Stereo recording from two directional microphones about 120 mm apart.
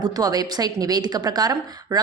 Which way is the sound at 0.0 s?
30° right (ahead or behind).